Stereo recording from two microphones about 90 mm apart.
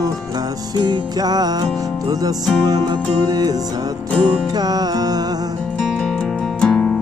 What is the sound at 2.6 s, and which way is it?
Music, 50° right (ahead or behind).